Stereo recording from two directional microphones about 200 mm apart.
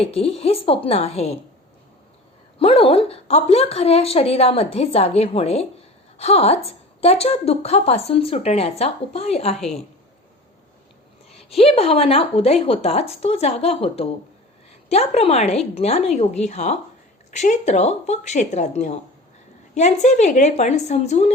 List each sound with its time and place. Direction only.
0.0 s speech: 30° left (ahead or behind)
2.6 s a woman's voice: 30° left (ahead or behind)
11.3 s a woman's voice: 30° left (ahead or behind)